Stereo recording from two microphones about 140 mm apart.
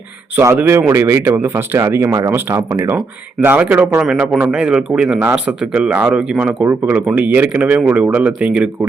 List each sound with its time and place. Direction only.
0.3 s speech: 20° right (ahead or behind)